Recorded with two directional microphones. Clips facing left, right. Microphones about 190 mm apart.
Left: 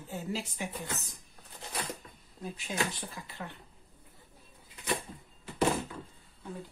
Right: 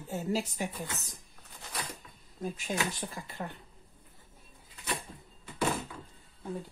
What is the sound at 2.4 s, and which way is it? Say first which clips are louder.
Speech: right 1 dB; 45° right (ahead or behind).